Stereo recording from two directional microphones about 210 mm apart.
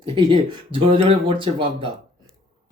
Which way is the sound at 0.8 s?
25° right (ahead or behind).